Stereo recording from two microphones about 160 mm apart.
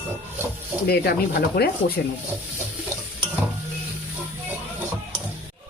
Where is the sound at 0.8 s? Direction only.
75° left (ahead or behind).